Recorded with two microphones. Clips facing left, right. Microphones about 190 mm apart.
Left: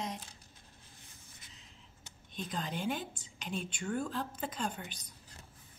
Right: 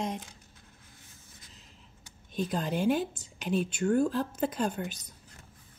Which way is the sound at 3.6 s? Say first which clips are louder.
Right 11 dB; 45° right (ahead or behind).